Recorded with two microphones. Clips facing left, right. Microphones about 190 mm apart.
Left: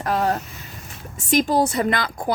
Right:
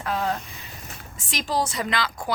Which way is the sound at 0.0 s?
45° left (ahead or behind).